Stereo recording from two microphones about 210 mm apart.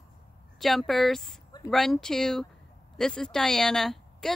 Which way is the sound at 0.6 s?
Centre (ahead or behind).